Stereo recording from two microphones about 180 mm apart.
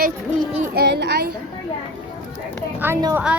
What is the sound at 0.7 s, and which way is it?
Speech, 65° right (ahead or behind).